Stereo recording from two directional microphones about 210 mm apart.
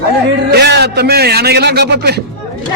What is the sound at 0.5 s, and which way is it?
A man's voice, 50° right (ahead or behind).